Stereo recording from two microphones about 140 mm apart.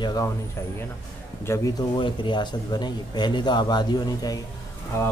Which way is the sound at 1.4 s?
20° left (ahead or behind).